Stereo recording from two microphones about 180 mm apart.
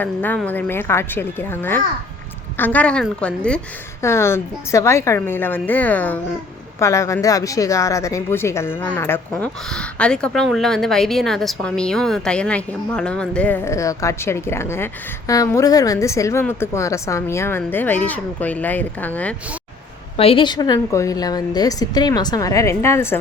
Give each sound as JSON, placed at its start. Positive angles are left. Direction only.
{"t": 0.0, "sound": "speech", "side_deg": 10}
{"t": 20.1, "sound": "a woman's voice", "side_deg": 30}